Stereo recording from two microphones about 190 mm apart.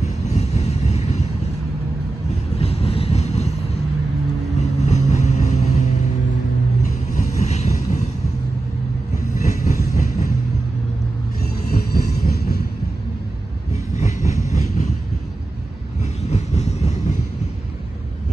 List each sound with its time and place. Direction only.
0.0 s vehicle: 35° left (ahead or behind)
2.6 s vehicle: 30° left (ahead or behind)
4.6 s vehicle: 35° left (ahead or behind)
7.2 s vehicle: 35° left (ahead or behind)
9.4 s train: 40° left (ahead or behind)
11.7 s train: 55° left (ahead or behind)
13.9 s train: 40° left (ahead or behind)
16.0 s train: 35° left (ahead or behind)